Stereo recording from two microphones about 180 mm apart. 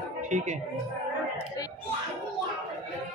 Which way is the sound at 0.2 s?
40° right (ahead or behind).